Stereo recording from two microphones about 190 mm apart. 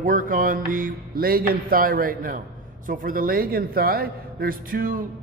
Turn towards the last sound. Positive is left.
turn(degrees=-50)  # may be behind; listen again after turning